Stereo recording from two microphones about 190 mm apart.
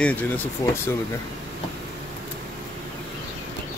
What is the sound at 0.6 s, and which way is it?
Speech, 20° left (ahead or behind).